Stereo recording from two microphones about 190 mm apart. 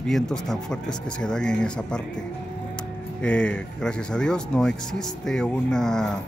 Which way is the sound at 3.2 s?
5° left (ahead or behind).